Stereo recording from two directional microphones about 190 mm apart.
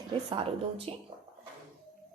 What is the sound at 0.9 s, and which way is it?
Speech, 30° right (ahead or behind).